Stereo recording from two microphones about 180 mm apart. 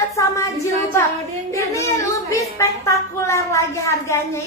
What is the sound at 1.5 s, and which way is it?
Speech, 15° left (ahead or behind).